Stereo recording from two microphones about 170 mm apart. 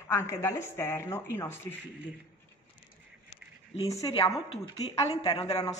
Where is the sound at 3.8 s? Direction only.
20° left (ahead or behind).